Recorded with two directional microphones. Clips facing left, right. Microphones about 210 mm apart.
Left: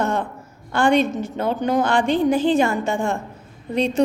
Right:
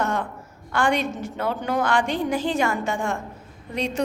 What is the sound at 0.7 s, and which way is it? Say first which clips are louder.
A woman's voice: left 5 dB; 25° left (ahead or behind).